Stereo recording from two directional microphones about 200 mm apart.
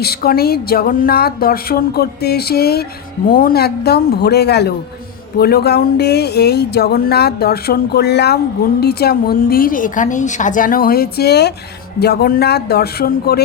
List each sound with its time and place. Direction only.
0.0 s speech: 50° left (ahead or behind)